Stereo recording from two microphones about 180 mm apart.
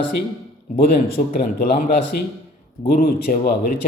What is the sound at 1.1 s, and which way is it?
A man's voice, 50° left (ahead or behind).